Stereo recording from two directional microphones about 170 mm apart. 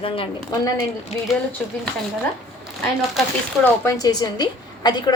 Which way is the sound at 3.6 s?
20° left (ahead or behind).